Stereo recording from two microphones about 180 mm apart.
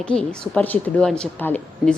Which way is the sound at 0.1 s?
5° left (ahead or behind).